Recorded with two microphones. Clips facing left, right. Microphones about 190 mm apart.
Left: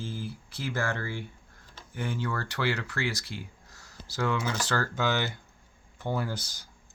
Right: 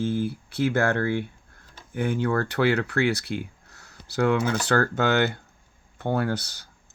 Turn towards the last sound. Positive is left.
turn(degrees=-65)  # may be behind; listen again after turning